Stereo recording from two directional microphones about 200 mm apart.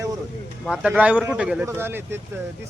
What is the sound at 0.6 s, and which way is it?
Speech, 5° right (ahead or behind).